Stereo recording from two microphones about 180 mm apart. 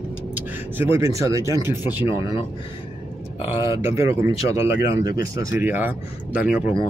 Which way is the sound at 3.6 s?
15° right (ahead or behind).